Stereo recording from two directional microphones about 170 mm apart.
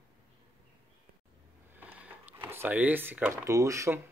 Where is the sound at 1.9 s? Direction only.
10° right (ahead or behind).